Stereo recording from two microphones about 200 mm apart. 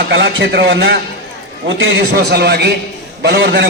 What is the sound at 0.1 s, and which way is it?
A man's voice, 60° right (ahead or behind).